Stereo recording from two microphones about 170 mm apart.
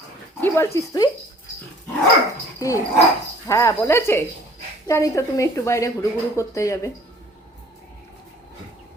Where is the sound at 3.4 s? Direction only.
15° left (ahead or behind).